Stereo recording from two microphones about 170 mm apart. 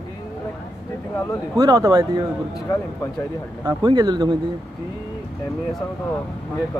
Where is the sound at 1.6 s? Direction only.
20° right (ahead or behind).